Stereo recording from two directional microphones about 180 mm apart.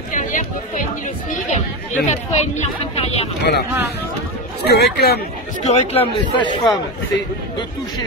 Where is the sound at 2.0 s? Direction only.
40° left (ahead or behind).